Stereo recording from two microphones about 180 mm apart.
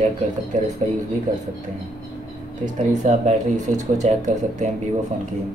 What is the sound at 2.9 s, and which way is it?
Speech, 40° right (ahead or behind).